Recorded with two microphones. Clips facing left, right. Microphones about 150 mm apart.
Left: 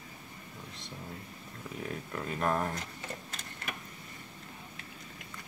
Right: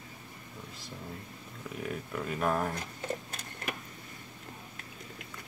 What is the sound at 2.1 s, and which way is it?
Speech, 5° right (ahead or behind).